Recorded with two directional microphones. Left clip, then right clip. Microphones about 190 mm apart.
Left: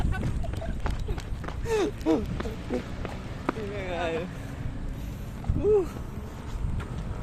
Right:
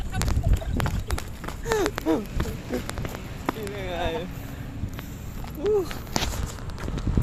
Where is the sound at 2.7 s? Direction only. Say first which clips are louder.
Right 1 dB; 55° right (ahead or behind).